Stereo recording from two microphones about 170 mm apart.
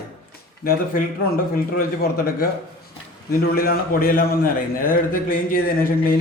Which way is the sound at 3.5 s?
60° left (ahead or behind).